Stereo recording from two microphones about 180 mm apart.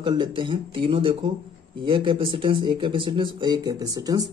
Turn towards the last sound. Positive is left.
turn(degrees=-20)  # may be behind; listen again after turning